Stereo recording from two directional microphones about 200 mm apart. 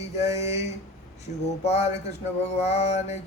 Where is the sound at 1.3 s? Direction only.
40° left (ahead or behind).